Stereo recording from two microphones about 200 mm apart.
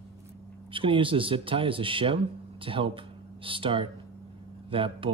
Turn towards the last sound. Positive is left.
turn(degrees=-25)  # may be behind; listen again after turning